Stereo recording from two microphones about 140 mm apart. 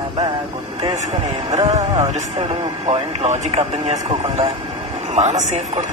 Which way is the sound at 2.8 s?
50° right (ahead or behind).